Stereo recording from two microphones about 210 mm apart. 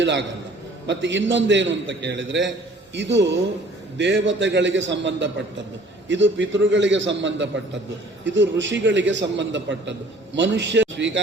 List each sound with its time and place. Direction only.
0.0 s a man's voice: 60° right (ahead or behind)